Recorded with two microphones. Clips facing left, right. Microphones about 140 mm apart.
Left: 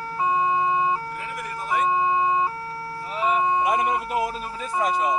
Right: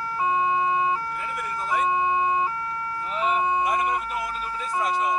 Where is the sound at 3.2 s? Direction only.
5° left (ahead or behind).